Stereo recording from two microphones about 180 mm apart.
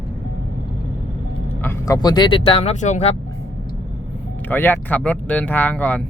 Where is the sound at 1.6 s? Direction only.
15° left (ahead or behind); by 3.2 s 40° left (ahead or behind).